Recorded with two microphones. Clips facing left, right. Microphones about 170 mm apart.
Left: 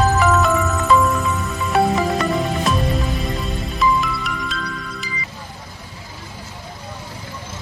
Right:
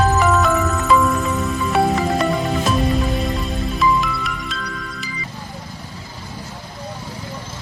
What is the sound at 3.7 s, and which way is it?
Music, centre (ahead or behind).